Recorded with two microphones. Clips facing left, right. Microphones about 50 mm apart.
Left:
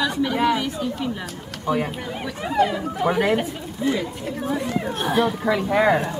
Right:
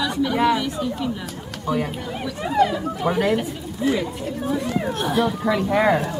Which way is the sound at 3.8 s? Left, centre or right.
Centre.